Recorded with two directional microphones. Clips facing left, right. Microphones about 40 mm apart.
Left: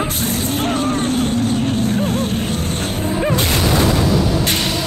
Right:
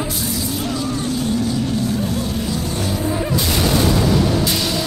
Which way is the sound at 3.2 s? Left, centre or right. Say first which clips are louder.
Left 3 dB; left.